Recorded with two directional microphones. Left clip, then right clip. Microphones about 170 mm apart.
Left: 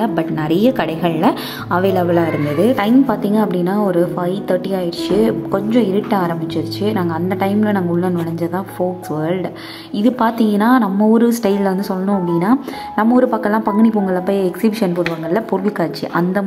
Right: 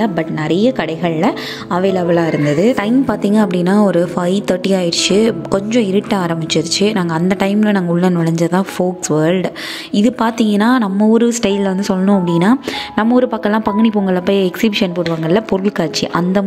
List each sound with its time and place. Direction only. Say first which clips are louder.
0.0 s a woman's voice: right 1 dB; 25° right (ahead or behind); by 16.4 s 45° right (ahead or behind)